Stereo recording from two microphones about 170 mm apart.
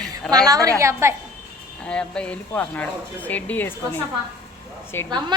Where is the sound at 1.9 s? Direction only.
5° left (ahead or behind).